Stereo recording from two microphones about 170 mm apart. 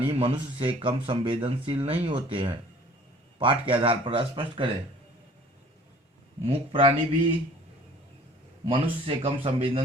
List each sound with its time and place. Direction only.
0.1 s speech: 30° right (ahead or behind)
6.4 s speech: 35° right (ahead or behind)
8.6 s speech: 35° right (ahead or behind)